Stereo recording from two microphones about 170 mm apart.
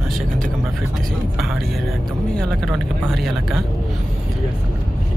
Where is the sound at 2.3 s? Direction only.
5° left (ahead or behind).